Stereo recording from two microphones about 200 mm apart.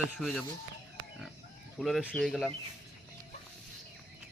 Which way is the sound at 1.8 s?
Centre (ahead or behind).